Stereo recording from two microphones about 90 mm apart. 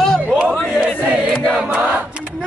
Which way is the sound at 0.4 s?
10° right (ahead or behind).